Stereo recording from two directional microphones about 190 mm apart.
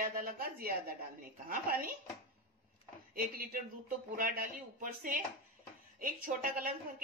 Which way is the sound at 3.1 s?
50° right (ahead or behind).